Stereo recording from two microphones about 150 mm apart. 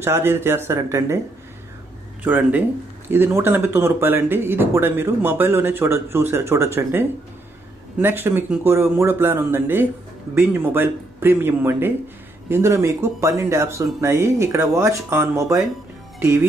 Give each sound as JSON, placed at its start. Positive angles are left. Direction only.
{"t": 0.0, "sound": "speech", "side_deg": -15}
{"t": 2.2, "sound": "speech", "side_deg": -10}